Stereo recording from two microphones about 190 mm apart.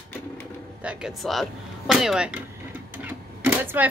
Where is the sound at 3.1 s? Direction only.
10° right (ahead or behind).